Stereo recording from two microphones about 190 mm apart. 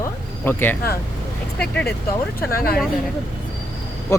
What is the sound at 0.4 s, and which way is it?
Speech, 10° left (ahead or behind).